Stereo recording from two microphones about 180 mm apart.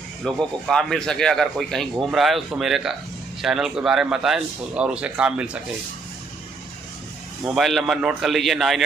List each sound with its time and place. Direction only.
0.2 s a man's voice: centre (ahead or behind)
7.4 s a man's voice: centre (ahead or behind)